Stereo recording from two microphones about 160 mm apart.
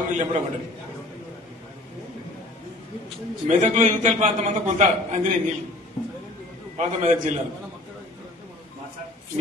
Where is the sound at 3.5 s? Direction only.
50° right (ahead or behind).